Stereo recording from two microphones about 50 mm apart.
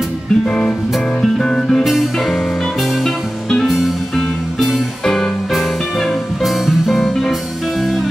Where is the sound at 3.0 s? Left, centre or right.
Centre.